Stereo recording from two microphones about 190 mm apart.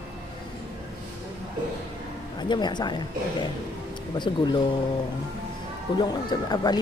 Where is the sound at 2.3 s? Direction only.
25° left (ahead or behind).